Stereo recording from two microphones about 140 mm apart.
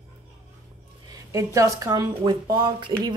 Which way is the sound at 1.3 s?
25° right (ahead or behind).